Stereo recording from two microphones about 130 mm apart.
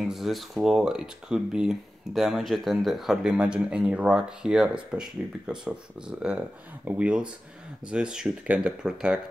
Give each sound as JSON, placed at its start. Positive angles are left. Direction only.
{"t": 0.0, "sound": "speech", "side_deg": 0}